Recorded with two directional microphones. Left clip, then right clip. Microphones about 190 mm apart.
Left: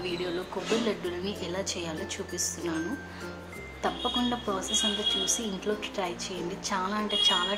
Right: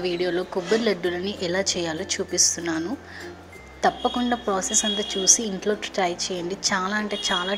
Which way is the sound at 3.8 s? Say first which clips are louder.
Right 7 dB; 25° right (ahead or behind).